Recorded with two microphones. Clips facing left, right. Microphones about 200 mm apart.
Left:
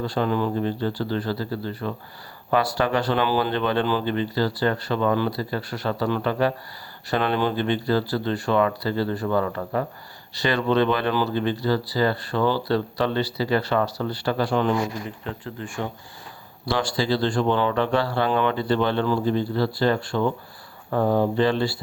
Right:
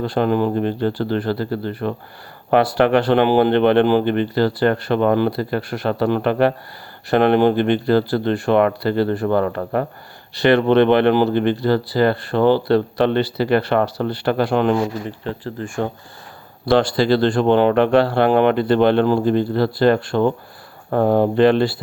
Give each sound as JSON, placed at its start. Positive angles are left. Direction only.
{"t": 0.0, "sound": "speech", "side_deg": -55}
{"t": 15.6, "sound": "speech", "side_deg": -45}
{"t": 16.6, "sound": "speech", "side_deg": -60}